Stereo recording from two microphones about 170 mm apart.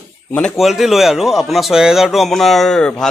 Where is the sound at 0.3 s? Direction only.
5° left (ahead or behind).